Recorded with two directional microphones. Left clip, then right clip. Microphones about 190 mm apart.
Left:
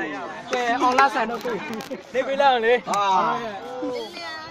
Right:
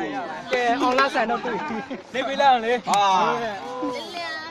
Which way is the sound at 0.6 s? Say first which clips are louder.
Left 2 dB; 45° left (ahead or behind).